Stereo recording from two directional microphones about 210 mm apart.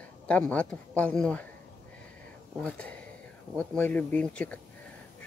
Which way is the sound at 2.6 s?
5° left (ahead or behind).